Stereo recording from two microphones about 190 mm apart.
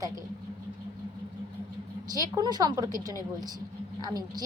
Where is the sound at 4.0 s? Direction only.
20° right (ahead or behind).